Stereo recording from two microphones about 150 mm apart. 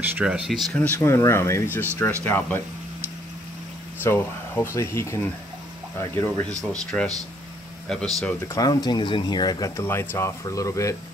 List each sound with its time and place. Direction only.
0.2 s speech: centre (ahead or behind)
0.7 s speech: 15° left (ahead or behind)
4.0 s speech: 15° left (ahead or behind)
6.7 s speech: 5° left (ahead or behind)
8.5 s speech: 25° left (ahead or behind)